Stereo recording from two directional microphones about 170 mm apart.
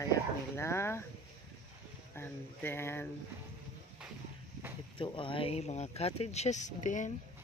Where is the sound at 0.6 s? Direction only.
15° left (ahead or behind).